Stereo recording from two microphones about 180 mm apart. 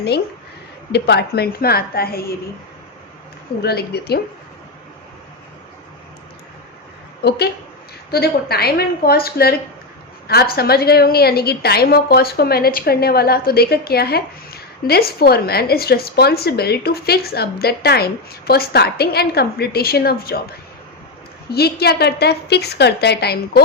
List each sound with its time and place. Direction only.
0.9 s a woman's voice: 70° left (ahead or behind)
3.6 s a woman's voice: 60° left (ahead or behind)
7.2 s a woman's voice: 65° left (ahead or behind)
21.5 s a woman's voice: 60° left (ahead or behind)